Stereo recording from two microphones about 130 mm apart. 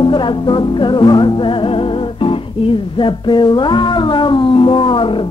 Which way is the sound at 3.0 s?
35° left (ahead or behind).